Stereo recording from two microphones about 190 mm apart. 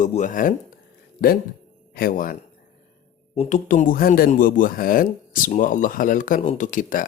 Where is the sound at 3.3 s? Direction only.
40° left (ahead or behind).